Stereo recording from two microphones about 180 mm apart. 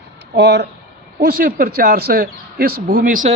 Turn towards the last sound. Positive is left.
turn(degrees=-45)  # may be behind; listen again after turning